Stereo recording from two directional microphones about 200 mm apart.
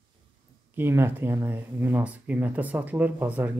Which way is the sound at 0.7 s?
10° right (ahead or behind).